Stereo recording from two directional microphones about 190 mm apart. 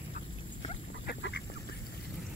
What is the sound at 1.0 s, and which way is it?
Duck, 65° left (ahead or behind).